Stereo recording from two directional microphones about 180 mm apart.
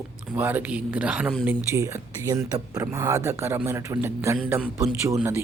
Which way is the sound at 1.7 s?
20° right (ahead or behind).